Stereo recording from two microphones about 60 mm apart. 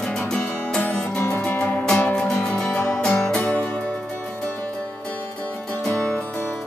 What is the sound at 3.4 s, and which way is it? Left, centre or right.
Music, left.